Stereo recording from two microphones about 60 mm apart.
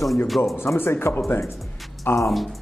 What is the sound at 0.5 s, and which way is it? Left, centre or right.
Speech, left.